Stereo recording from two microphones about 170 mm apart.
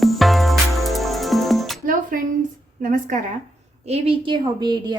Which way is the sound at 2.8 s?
55° right (ahead or behind).